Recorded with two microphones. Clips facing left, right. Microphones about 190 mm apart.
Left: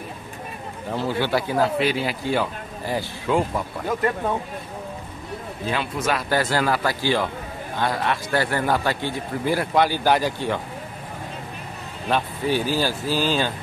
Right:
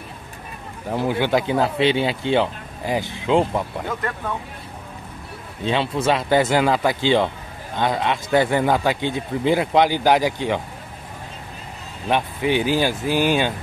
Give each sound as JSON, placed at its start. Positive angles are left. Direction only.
{"t": 0.9, "sound": "speech", "side_deg": -15}
{"t": 5.7, "sound": "speech", "side_deg": -25}
{"t": 12.1, "sound": "speech", "side_deg": -15}